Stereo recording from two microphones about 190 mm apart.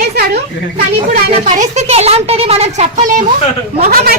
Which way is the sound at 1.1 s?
40° right (ahead or behind).